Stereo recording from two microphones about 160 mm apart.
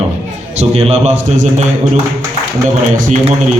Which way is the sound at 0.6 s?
40° right (ahead or behind).